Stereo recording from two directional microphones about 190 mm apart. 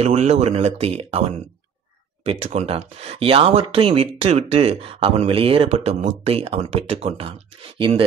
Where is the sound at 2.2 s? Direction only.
35° right (ahead or behind).